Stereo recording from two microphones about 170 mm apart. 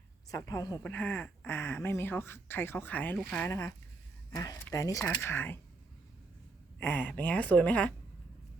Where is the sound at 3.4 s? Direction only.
15° left (ahead or behind).